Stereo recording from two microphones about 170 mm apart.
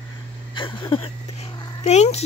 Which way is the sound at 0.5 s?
30° left (ahead or behind).